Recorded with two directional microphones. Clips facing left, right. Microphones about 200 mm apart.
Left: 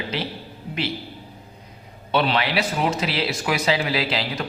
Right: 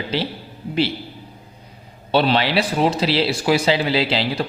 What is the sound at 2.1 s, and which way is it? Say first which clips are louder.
A man's voice: right 4 dB; 30° right (ahead or behind).